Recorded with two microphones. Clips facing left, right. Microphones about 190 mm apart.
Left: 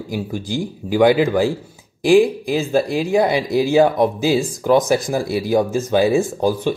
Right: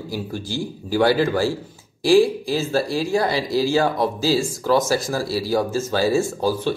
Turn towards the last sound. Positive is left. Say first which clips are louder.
# left 3 dB
turn(degrees=15)  # may be behind; listen again after turning